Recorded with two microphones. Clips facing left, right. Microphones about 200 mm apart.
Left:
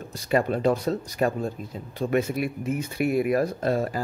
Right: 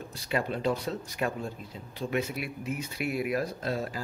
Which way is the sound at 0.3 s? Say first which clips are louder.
Left 7 dB; 50° left (ahead or behind).